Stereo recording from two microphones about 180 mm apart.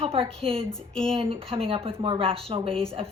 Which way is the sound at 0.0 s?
30° right (ahead or behind).